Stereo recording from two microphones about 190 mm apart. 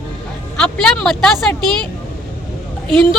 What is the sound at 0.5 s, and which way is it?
A woman's voice, 5° left (ahead or behind).